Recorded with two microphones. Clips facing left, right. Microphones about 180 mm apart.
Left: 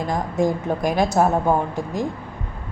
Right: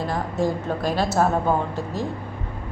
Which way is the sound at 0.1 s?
15° left (ahead or behind).